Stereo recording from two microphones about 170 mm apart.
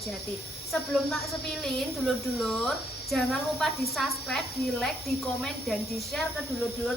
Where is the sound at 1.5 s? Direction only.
5° left (ahead or behind).